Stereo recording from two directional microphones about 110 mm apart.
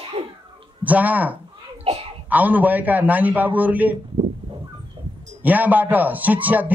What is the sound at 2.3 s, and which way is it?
A man's voice, 15° right (ahead or behind).